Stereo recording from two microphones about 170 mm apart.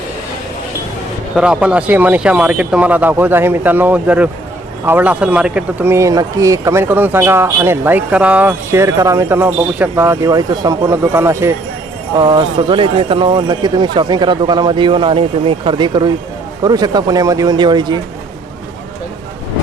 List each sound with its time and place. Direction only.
1.4 s speech: 5° right (ahead or behind); by 18.0 s 25° right (ahead or behind)